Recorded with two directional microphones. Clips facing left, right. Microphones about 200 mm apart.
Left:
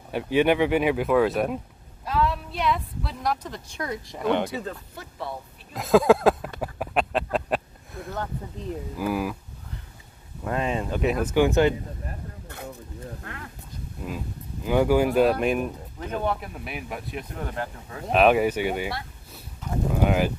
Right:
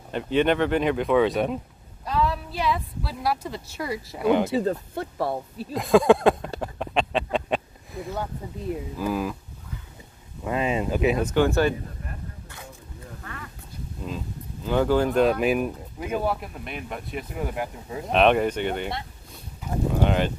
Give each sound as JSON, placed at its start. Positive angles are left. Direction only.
{"t": 0.1, "sound": "speech", "side_deg": 10}
{"t": 4.5, "sound": "speech", "side_deg": -30}
{"t": 4.9, "sound": "speech", "side_deg": -60}
{"t": 5.7, "sound": "speech", "side_deg": 0}
{"t": 6.6, "sound": "a sound", "side_deg": 5}
{"t": 8.9, "sound": "speech", "side_deg": 10}
{"t": 10.4, "sound": "speech", "side_deg": -5}
{"t": 12.4, "sound": "a sound", "side_deg": 60}
{"t": 14.0, "sound": "speech", "side_deg": 10}
{"t": 18.1, "sound": "speech", "side_deg": 5}
{"t": 20.0, "sound": "speech", "side_deg": 5}